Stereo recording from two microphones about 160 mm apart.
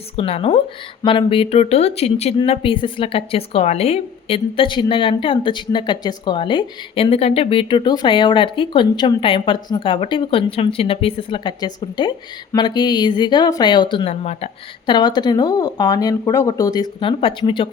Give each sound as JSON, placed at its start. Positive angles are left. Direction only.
{"t": 0.2, "sound": "a woman's voice", "side_deg": 35}
{"t": 14.1, "sound": "speech", "side_deg": 45}
{"t": 14.8, "sound": "speech", "side_deg": 25}